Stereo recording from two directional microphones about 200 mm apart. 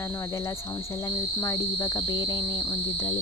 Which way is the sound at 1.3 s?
15° left (ahead or behind).